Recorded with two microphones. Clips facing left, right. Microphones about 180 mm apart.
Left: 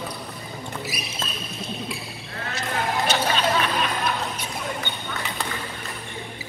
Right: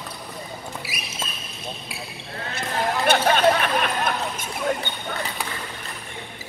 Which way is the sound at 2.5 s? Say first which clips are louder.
Right 1 dB; 55° right (ahead or behind).